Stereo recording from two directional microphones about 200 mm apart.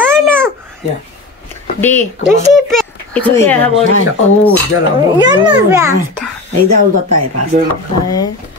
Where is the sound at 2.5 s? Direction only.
Centre (ahead or behind).